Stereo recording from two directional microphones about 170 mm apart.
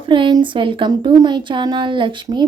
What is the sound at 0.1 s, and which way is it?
Speech, 25° right (ahead or behind).